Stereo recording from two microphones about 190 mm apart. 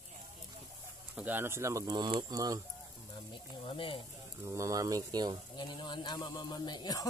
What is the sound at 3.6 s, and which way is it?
Speech, 25° left (ahead or behind).